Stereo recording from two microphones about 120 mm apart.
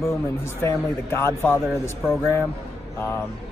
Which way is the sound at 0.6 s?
20° left (ahead or behind).